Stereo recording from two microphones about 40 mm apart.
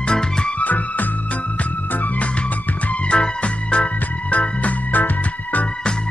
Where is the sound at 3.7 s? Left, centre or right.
Left.